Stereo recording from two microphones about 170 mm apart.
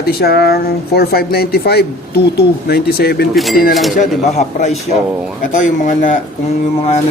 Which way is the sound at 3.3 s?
Centre (ahead or behind).